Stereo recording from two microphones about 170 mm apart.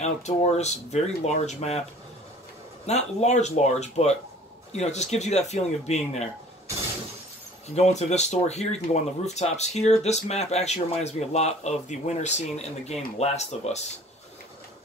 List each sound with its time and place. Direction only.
0.0 s speech: 40° left (ahead or behind)
2.9 s speech: 40° left (ahead or behind)
7.7 s speech: 40° left (ahead or behind)